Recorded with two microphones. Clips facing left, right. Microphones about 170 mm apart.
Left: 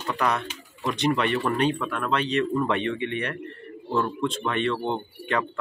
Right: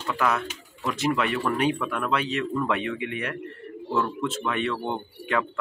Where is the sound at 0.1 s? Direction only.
Centre (ahead or behind).